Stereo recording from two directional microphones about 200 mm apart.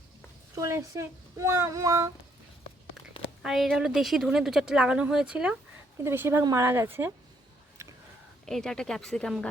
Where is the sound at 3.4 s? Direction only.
Centre (ahead or behind).